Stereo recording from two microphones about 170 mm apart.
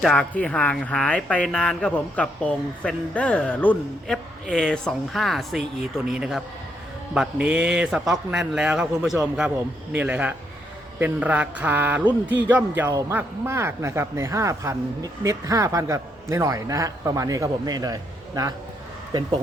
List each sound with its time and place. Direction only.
0.0 s speech: 5° left (ahead or behind); by 18.5 s 20° right (ahead or behind)